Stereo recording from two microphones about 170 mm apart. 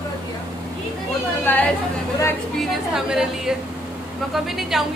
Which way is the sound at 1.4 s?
10° left (ahead or behind).